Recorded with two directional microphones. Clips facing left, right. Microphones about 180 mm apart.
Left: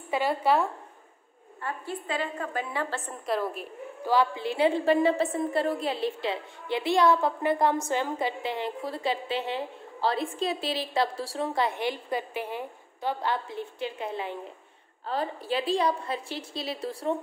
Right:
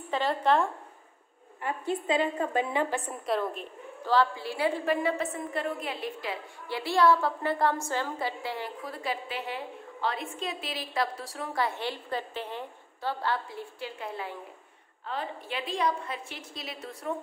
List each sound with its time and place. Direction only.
0.1 s speech: 10° left (ahead or behind)
1.6 s a woman's voice: 20° right (ahead or behind)
3.3 s a woman's voice: 5° left (ahead or behind); by 14.3 s 20° left (ahead or behind)
15.0 s a woman's voice: 35° left (ahead or behind)